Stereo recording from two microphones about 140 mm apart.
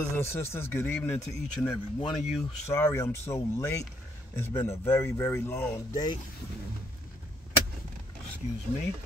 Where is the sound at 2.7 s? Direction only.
20° left (ahead or behind).